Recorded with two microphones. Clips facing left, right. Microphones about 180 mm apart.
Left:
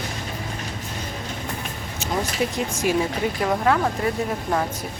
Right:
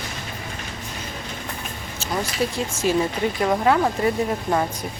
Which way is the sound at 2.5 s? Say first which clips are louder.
Right 1 dB; 15° left (ahead or behind).